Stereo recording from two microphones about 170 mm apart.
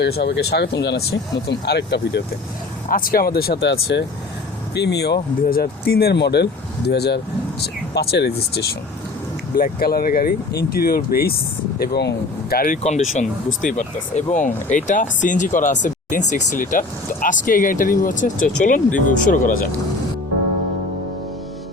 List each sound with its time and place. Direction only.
0.0 s speech: 85° left
1.5 s speech: 75° left (ahead or behind)
2.9 s speech: 55° left (ahead or behind); by 8.6 s 75° left (ahead or behind)
9.6 s speech: 60° left (ahead or behind)